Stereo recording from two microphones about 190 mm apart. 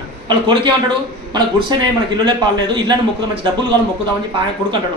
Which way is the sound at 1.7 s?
20° right (ahead or behind).